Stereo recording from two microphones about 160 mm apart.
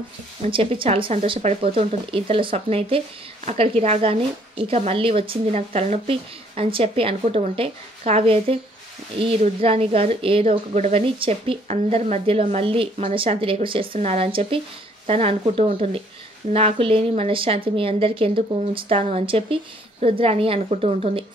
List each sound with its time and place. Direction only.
0.5 s a woman's voice: 35° right (ahead or behind)